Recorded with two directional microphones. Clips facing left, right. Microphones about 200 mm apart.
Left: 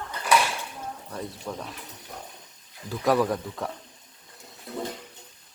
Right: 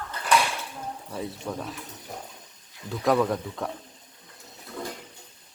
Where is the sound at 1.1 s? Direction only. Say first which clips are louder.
Right 2 dB; 5° right (ahead or behind).